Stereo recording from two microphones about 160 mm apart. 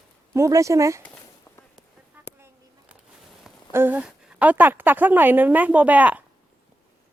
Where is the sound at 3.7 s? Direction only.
15° right (ahead or behind).